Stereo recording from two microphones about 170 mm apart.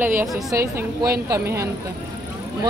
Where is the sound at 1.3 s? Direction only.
15° right (ahead or behind).